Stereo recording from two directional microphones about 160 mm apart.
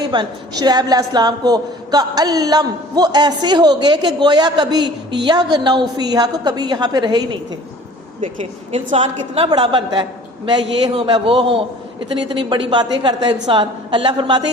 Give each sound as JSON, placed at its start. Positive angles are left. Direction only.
{"t": 0.1, "sound": "a woman's voice", "side_deg": -25}
{"t": 8.7, "sound": "a woman's voice", "side_deg": -40}